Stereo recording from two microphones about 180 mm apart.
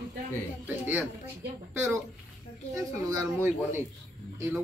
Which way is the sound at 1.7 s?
15° right (ahead or behind).